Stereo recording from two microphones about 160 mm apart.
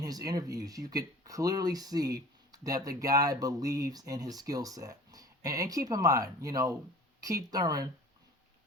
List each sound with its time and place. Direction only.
0.0 s speech: 25° right (ahead or behind)